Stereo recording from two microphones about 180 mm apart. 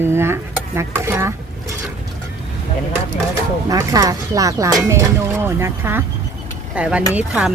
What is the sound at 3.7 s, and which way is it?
Speech, 20° right (ahead or behind).